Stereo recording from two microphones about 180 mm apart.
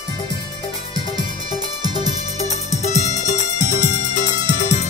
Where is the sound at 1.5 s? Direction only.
20° right (ahead or behind).